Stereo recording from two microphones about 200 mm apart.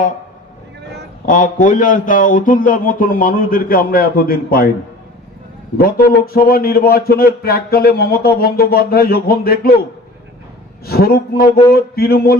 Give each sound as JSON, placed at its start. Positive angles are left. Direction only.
{"t": 1.2, "sound": "a man's voice", "side_deg": 40}
{"t": 5.7, "sound": "a man's voice", "side_deg": 50}
{"t": 10.8, "sound": "a man's voice", "side_deg": 50}